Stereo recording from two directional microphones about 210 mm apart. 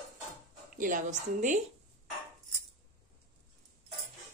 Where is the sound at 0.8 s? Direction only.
40° right (ahead or behind).